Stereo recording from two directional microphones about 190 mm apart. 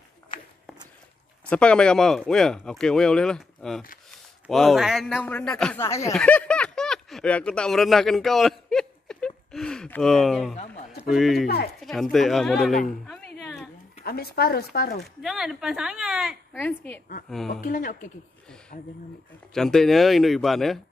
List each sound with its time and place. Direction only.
0.3 s walk: 25° left (ahead or behind)
1.5 s speech: 5° left (ahead or behind)
6.1 s a sound: 5° left (ahead or behind)
11.0 s speech: centre (ahead or behind)
11.4 s speech: 55° left (ahead or behind)
11.8 s speech: centre (ahead or behind)
14.0 s speech: 55° left (ahead or behind)
15.2 s speech: centre (ahead or behind)
16.6 s a woman's voice: 10° left (ahead or behind)
17.6 s speech: 45° left (ahead or behind)
19.5 s speech: 5° left (ahead or behind)